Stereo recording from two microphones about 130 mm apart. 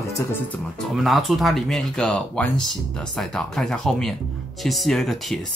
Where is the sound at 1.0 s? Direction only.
Centre (ahead or behind).